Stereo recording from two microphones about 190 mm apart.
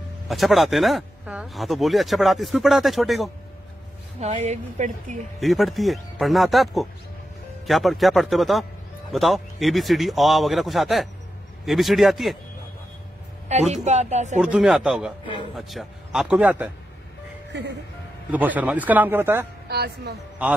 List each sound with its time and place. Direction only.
0.3 s speech: centre (ahead or behind)
4.2 s speech: 35° right (ahead or behind)
5.4 s speech: centre (ahead or behind)
13.5 s speech: 35° right (ahead or behind)
14.4 s speech: 5° right (ahead or behind)
17.5 s speech: 65° right (ahead or behind)
18.3 s speech: 10° right (ahead or behind)
19.7 s a woman's voice: 55° right (ahead or behind)